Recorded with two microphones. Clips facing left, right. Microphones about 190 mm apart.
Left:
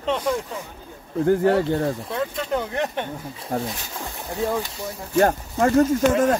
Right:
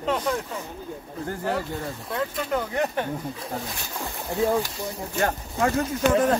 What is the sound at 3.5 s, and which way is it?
Speech, 55° left (ahead or behind).